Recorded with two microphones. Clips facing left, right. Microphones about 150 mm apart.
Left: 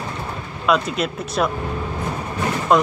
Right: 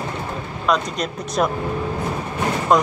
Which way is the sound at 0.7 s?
5° left (ahead or behind).